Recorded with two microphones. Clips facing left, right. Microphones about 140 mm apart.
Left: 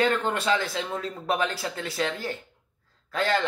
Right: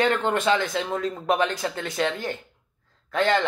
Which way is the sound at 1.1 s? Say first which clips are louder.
Right 2 dB; 40° right (ahead or behind).